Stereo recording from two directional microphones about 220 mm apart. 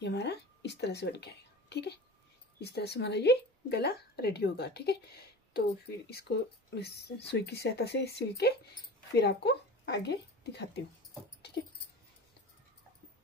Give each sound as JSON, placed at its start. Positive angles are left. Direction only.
{"t": 0.0, "sound": "a woman's voice", "side_deg": 50}